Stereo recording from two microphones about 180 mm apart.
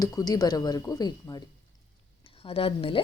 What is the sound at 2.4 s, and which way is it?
Speech, 30° left (ahead or behind).